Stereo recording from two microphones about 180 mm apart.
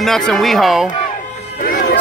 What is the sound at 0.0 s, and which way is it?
Speech, centre (ahead or behind).